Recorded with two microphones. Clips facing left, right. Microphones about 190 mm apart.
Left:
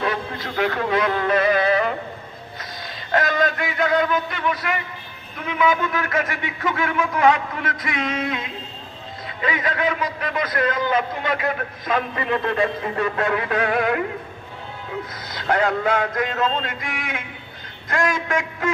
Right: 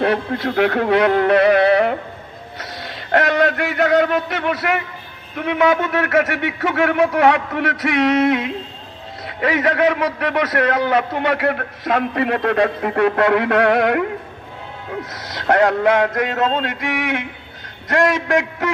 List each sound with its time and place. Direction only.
0.0 s speech: 65° right (ahead or behind)
2.6 s a sound: 70° right (ahead or behind)
5.4 s a man's voice: 70° right (ahead or behind)
15.1 s a man's voice: 80° right